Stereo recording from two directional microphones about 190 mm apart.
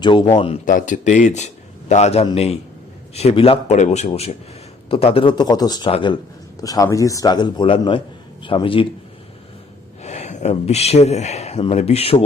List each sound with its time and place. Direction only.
0.0 s a man's voice: 25° left (ahead or behind)
0.6 s a man's voice: 45° left (ahead or behind); by 8.9 s 30° left (ahead or behind)
10.0 s speech: 35° left (ahead or behind)